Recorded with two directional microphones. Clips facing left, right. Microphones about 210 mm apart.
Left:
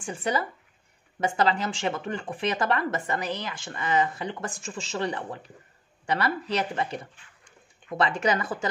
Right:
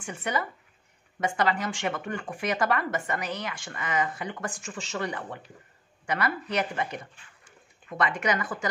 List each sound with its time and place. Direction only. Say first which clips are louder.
0.0 s speech: left 3 dB; 30° left (ahead or behind)
8.0 s speech: left 2 dB; 30° left (ahead or behind)